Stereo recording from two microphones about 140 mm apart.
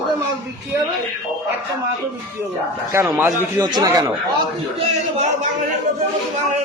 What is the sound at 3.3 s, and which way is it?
Speech, 25° right (ahead or behind).